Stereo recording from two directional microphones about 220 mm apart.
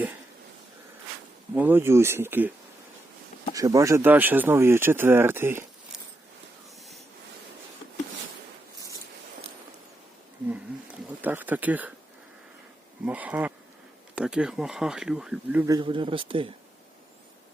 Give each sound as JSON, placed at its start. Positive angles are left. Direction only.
{"t": 1.5, "sound": "speech", "side_deg": -10}
{"t": 3.5, "sound": "speech", "side_deg": -15}
{"t": 11.2, "sound": "speech", "side_deg": -10}
{"t": 13.1, "sound": "speech", "side_deg": -5}
{"t": 15.6, "sound": "speech", "side_deg": -20}